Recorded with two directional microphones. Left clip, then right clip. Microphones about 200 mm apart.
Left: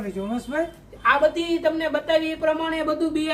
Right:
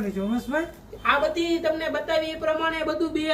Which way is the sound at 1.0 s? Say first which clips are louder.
Left 3 dB; 25° left (ahead or behind).